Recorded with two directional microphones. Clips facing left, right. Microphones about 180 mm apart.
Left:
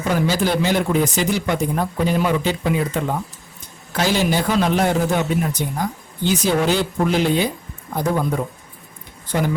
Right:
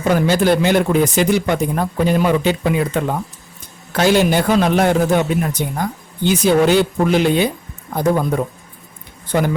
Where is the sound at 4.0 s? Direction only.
60° right (ahead or behind).